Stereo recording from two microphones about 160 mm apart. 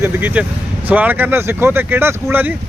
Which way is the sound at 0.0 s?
10° right (ahead or behind).